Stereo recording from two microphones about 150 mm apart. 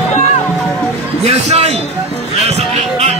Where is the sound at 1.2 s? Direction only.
45° right (ahead or behind).